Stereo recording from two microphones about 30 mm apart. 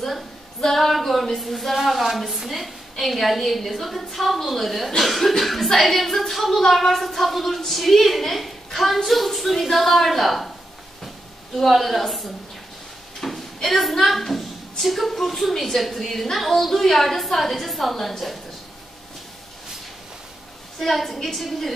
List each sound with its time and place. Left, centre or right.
0.7 s a sound: centre
1.3 s a woman's voice: centre
11.7 s a woman's voice: centre
20.8 s a woman's voice: centre